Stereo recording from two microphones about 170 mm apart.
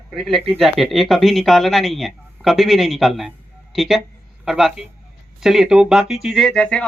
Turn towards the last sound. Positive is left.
turn(degrees=5)  # may be behind; listen again after turning